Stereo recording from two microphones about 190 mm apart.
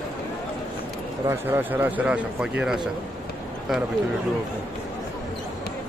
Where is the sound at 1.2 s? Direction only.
10° right (ahead or behind).